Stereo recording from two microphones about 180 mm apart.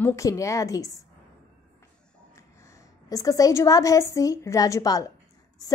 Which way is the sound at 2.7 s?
20° left (ahead or behind).